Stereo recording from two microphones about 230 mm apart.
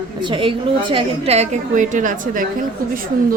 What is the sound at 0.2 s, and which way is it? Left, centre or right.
A woman's voice, right.